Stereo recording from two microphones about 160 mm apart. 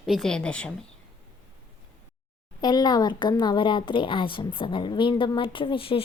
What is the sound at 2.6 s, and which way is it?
A woman's voice, 25° left (ahead or behind).